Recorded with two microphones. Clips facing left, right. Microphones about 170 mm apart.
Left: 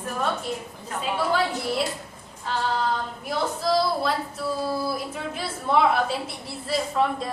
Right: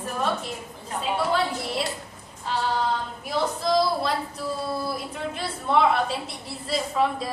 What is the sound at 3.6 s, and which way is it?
A woman's voice, centre (ahead or behind).